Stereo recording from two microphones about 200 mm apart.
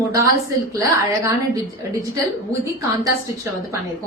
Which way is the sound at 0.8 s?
15° right (ahead or behind).